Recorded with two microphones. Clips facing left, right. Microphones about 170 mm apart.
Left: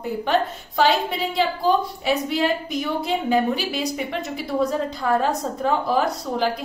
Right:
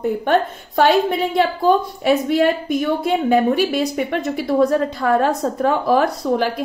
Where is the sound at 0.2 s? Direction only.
55° right (ahead or behind).